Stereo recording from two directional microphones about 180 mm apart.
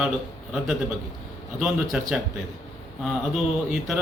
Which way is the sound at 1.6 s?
5° right (ahead or behind).